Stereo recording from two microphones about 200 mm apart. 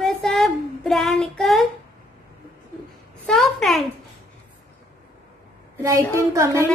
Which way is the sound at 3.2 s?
Centre (ahead or behind).